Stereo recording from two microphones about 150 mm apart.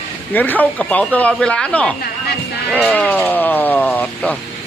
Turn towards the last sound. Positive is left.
turn(degrees=10)  # may be behind; listen again after turning